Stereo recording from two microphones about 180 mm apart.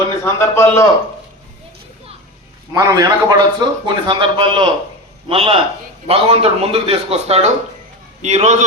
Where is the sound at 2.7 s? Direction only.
20° right (ahead or behind).